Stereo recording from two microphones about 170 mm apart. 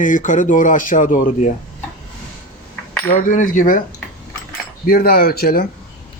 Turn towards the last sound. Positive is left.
turn(degrees=65)  # may be behind; listen again after turning